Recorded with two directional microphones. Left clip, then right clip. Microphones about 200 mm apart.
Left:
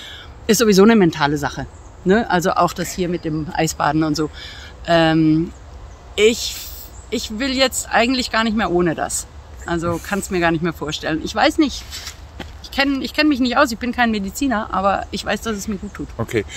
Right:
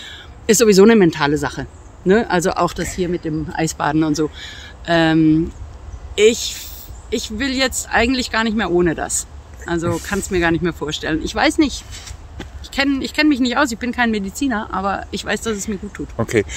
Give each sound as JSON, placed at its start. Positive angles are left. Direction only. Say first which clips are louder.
{"t": 0.0, "sound": "speech", "louder": "right 2 dB", "side_deg": 5}
{"t": 16.2, "sound": "speech", "louder": "right 4 dB", "side_deg": -45}